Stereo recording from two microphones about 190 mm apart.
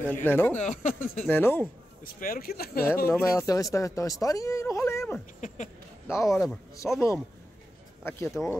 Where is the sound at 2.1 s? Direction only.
50° left (ahead or behind).